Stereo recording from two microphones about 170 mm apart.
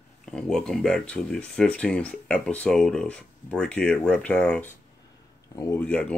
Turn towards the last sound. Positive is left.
turn(degrees=5)  # may be behind; listen again after turning